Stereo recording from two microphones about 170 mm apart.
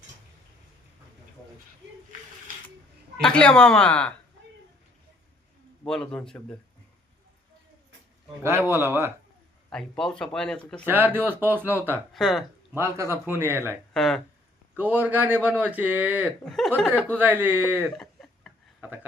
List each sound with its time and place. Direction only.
3.2 s speech: 5° left (ahead or behind)
5.8 s speech: 5° left (ahead or behind)
8.7 s speech: 15° right (ahead or behind)
9.6 s speech: 5° left (ahead or behind)
10.8 s speech: 10° right (ahead or behind)
12.1 s speech: centre (ahead or behind)
12.7 s speech: 15° right (ahead or behind)
13.9 s speech: 5° left (ahead or behind)
14.8 s speech: 10° right (ahead or behind)
16.4 s speech: 5° left (ahead or behind)
17.2 s speech: 10° right (ahead or behind)
17.9 s a sound: 5° left (ahead or behind)